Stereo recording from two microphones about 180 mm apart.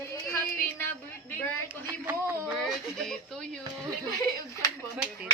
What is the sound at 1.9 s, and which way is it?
Speech, 10° right (ahead or behind).